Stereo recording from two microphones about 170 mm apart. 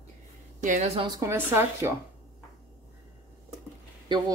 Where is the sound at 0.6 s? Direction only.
45° right (ahead or behind).